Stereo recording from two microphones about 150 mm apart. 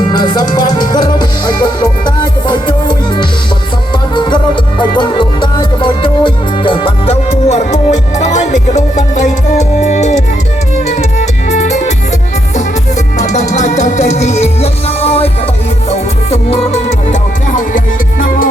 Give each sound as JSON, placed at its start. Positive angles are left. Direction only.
{"t": 0.1, "sound": "music", "side_deg": 30}
{"t": 13.1, "sound": "music", "side_deg": 50}